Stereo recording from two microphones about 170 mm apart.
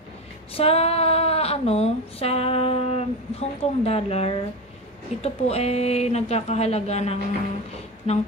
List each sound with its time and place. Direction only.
0.6 s speech: 35° left (ahead or behind)